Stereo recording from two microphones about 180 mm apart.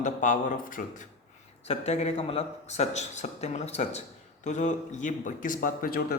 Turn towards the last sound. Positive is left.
turn(degrees=55)  # may be behind; listen again after turning